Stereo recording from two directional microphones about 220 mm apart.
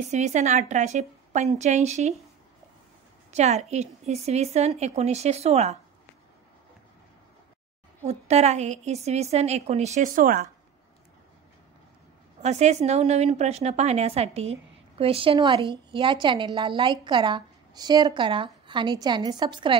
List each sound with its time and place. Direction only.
0.1 s a woman's voice: 30° right (ahead or behind)
3.3 s a woman's voice: 30° right (ahead or behind)
8.0 s a woman's voice: 30° right (ahead or behind)
12.4 s a woman's voice: 30° right (ahead or behind)